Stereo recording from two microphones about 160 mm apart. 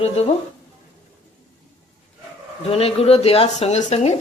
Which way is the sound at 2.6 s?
40° left (ahead or behind).